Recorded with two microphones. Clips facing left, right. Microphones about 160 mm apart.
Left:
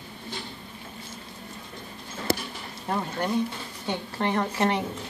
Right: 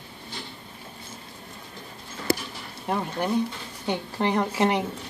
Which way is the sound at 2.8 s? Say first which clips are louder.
Right 1 dB; 10° right (ahead or behind).